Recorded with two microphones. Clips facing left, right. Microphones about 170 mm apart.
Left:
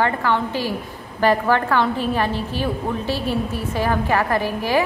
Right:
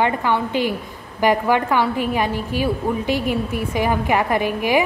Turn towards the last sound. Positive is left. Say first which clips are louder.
# right 1 dB
turn(degrees=-15)  # may be behind; listen again after turning